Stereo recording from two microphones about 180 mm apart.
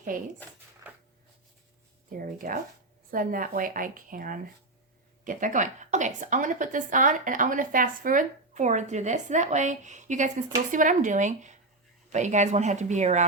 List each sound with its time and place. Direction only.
0.1 s a woman's voice: 50° right (ahead or behind)
2.0 s a woman's voice: 50° right (ahead or behind)